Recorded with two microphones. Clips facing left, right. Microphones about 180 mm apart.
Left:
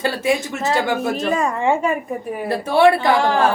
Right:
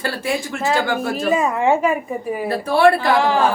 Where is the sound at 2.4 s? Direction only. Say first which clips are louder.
Left 1 dB; 20° left (ahead or behind).